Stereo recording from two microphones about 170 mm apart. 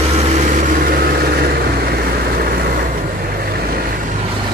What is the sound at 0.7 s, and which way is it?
Vehicle, 60° right (ahead or behind).